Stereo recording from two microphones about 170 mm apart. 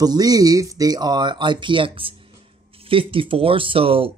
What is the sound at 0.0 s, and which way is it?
Speech, 25° right (ahead or behind).